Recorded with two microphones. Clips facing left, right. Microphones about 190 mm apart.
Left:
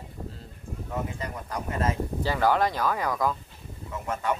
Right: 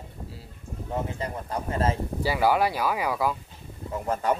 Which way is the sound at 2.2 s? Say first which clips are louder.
Right 1 dB; 10° right (ahead or behind).